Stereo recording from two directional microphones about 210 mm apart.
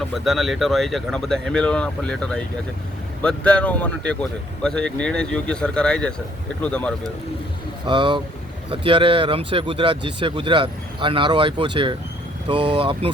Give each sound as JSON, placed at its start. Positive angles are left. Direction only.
{"t": 0.1, "sound": "speech", "side_deg": 0}
{"t": 7.9, "sound": "speech", "side_deg": -20}